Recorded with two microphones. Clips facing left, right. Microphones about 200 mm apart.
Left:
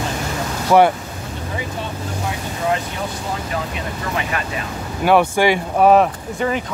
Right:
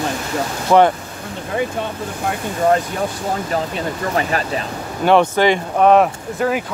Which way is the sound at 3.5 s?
35° right (ahead or behind).